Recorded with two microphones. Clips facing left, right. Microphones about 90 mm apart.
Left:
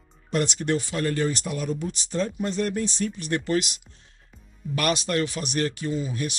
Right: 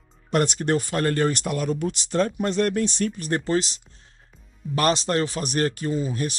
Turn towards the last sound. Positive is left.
turn(degrees=-40)  # may be behind; listen again after turning